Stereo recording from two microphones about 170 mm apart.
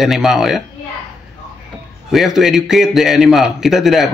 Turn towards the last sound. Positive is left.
turn(degrees=0)  # may be behind; listen again after turning